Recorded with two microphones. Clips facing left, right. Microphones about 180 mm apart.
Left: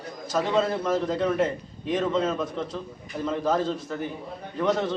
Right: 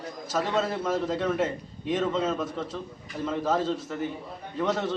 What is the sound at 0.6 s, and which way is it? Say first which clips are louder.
A man's voice: left 4 dB; 5° right (ahead or behind).